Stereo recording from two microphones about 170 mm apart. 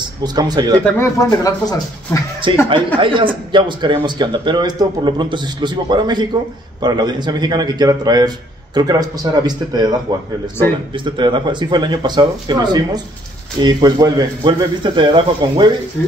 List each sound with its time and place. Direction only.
0.2 s a man's voice: 25° right (ahead or behind)
0.9 s speech: 20° left (ahead or behind)
2.5 s a man's voice: 30° right (ahead or behind)
10.9 s a man's voice: 30° right (ahead or behind)